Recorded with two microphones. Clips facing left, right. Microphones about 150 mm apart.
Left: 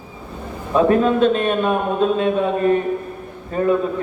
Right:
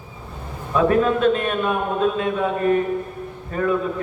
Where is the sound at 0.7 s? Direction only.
30° left (ahead or behind).